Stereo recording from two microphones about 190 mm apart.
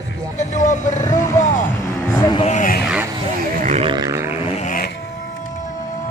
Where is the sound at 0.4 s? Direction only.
40° left (ahead or behind).